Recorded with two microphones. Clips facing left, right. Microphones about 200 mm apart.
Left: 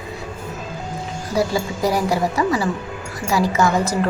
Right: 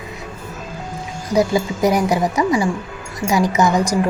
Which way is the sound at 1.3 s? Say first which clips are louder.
Right 4 dB; 20° right (ahead or behind).